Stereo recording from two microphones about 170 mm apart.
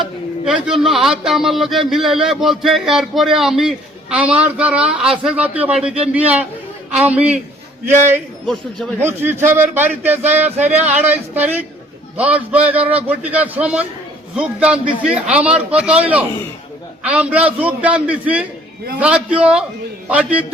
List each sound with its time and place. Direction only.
0.4 s a man's voice: 5° right (ahead or behind)